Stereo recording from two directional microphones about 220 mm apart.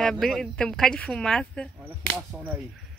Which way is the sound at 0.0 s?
Centre (ahead or behind).